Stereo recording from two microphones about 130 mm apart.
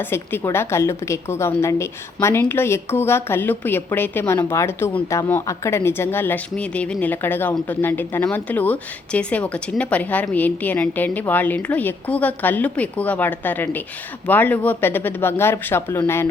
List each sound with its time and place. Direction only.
0.0 s a woman's voice: 15° left (ahead or behind)